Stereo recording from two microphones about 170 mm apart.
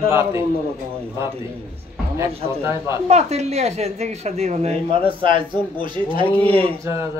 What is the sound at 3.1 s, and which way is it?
Speech, 40° right (ahead or behind).